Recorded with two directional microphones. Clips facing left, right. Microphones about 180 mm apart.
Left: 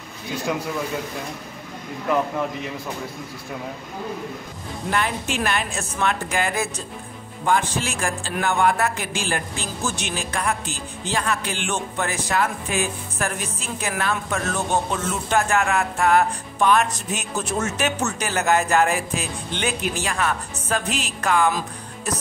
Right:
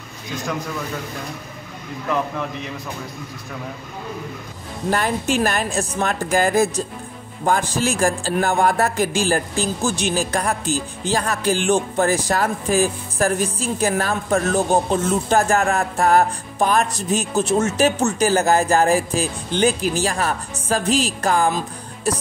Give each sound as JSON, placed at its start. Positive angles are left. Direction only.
{"t": 4.9, "sound": "a man's voice", "side_deg": -40}